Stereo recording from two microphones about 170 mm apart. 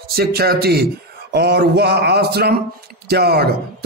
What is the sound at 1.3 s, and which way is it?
A man's voice, 70° right (ahead or behind).